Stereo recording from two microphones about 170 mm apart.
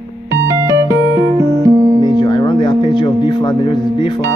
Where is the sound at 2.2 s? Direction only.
25° left (ahead or behind).